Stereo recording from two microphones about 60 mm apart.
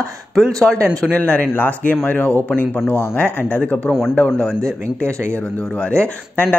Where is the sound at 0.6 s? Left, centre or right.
Centre; by 3.2 s left.